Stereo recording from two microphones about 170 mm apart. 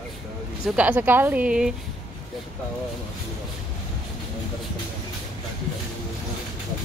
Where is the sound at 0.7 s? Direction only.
10° right (ahead or behind).